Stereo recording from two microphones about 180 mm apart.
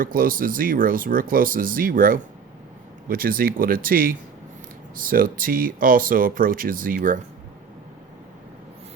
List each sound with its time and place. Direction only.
0.0 s speech: 50° right (ahead or behind)